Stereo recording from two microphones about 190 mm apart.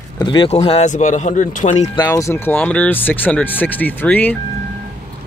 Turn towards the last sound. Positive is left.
turn(degrees=10)  # may be behind; listen again after turning